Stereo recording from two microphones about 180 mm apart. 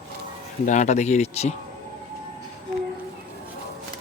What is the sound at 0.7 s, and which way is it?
Speech, 40° left (ahead or behind).